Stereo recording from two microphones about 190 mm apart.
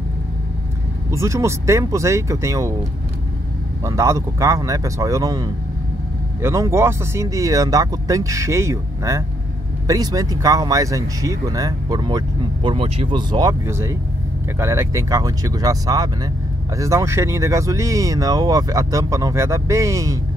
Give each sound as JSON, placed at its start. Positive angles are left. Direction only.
{"t": 1.1, "sound": "speech", "side_deg": -15}
{"t": 3.8, "sound": "speech", "side_deg": -15}